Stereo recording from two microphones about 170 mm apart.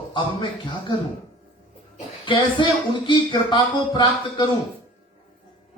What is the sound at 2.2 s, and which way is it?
Speech, 30° left (ahead or behind).